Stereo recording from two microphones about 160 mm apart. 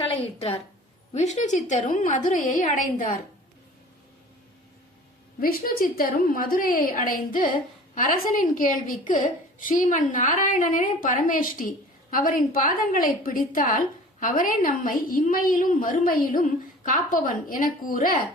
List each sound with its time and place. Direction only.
0.0 s a woman's voice: 35° left (ahead or behind)
1.1 s a woman's voice: 45° left (ahead or behind)
5.4 s a woman's voice: 65° left (ahead or behind)